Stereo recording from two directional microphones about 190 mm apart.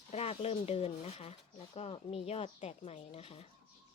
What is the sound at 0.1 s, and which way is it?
Speech, 30° left (ahead or behind).